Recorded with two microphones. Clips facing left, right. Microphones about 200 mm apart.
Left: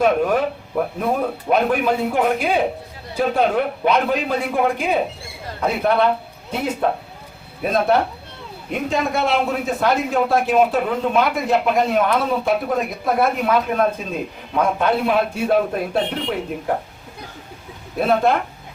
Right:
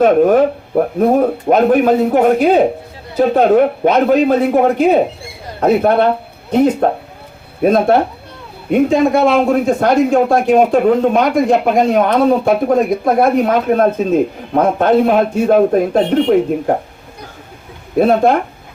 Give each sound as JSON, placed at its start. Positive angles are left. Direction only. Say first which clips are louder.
{"t": 0.0, "sound": "speech", "louder": "right 8 dB", "side_deg": -50}
{"t": 18.0, "sound": "speech", "louder": "right 6 dB", "side_deg": -50}